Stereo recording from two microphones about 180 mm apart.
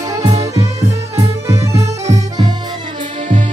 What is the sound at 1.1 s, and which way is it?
Music, 15° right (ahead or behind).